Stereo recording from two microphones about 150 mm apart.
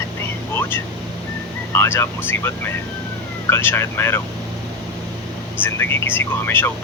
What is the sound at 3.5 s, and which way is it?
Speech, 15° left (ahead or behind).